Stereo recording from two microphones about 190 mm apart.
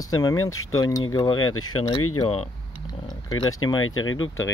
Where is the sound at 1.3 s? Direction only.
90° left.